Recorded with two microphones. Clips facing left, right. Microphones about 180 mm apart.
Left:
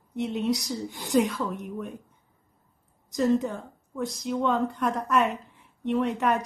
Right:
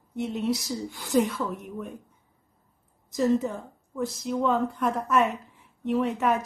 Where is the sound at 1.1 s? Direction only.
Centre (ahead or behind).